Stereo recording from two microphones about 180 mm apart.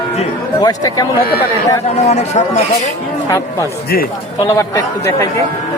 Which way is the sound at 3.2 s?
20° left (ahead or behind).